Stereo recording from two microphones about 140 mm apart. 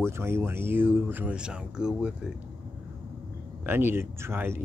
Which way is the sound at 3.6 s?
15° right (ahead or behind).